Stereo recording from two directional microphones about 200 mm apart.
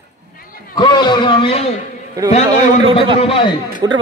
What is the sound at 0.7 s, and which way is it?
Speech, 20° left (ahead or behind).